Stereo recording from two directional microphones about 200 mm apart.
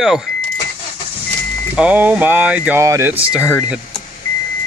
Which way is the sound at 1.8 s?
5° right (ahead or behind).